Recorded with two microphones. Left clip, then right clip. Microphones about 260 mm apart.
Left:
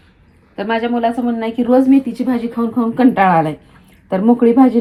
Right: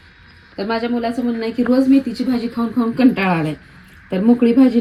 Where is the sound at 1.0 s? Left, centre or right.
Left.